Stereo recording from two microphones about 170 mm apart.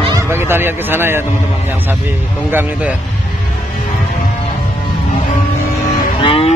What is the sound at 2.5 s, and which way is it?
Speech, 10° right (ahead or behind).